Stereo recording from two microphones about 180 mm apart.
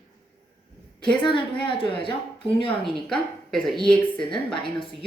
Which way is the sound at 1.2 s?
25° left (ahead or behind).